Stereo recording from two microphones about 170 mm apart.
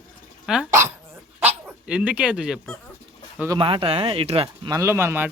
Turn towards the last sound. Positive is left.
turn(degrees=-15)  # may be behind; listen again after turning